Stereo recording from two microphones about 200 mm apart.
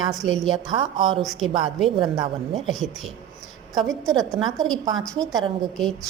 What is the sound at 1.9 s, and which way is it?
Speech, 25° right (ahead or behind).